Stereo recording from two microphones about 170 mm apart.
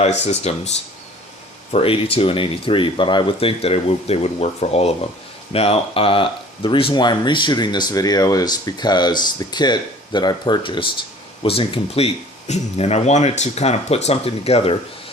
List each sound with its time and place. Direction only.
0.3 s speech: 40° left (ahead or behind)
1.7 s speech: 35° left (ahead or behind)